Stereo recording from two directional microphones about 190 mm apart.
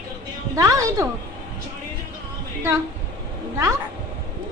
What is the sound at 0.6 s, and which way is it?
Speech, 15° right (ahead or behind).